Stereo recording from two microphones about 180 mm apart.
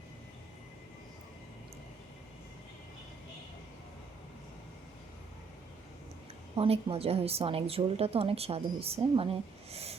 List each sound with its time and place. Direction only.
6.6 s a woman's voice: 30° right (ahead or behind)